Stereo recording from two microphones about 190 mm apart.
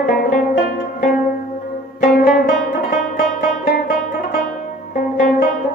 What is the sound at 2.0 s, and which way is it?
Music, 50° left (ahead or behind).